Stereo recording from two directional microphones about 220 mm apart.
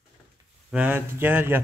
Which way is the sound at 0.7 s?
5° right (ahead or behind).